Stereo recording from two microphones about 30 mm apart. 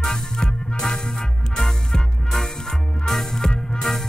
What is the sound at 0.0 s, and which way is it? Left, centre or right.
Music, left.